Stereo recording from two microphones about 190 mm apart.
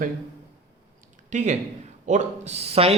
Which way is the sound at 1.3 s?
40° right (ahead or behind).